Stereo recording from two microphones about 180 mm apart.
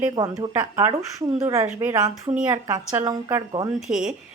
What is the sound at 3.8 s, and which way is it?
Speech, centre (ahead or behind).